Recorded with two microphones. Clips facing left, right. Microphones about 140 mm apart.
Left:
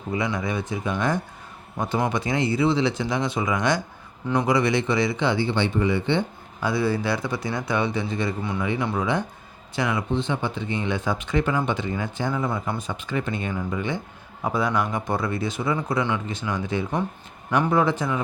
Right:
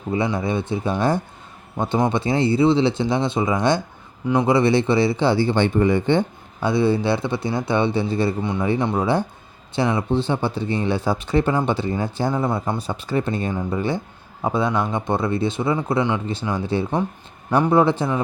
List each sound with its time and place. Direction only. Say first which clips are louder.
0.1 s speech: right 4 dB; 30° right (ahead or behind); by 6.2 s 45° right (ahead or behind)
6.6 s speech: right 5 dB; 25° right (ahead or behind)
14.4 s speech: right 3 dB; 25° right (ahead or behind)